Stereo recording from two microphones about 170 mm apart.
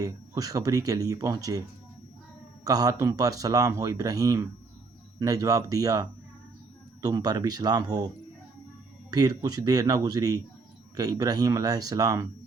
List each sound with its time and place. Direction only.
0.0 s speech: 20° right (ahead or behind)
2.6 s speech: 20° right (ahead or behind)
9.0 s speech: 20° right (ahead or behind)